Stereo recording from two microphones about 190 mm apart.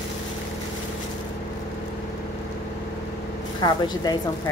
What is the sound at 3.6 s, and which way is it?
Speech, 20° left (ahead or behind).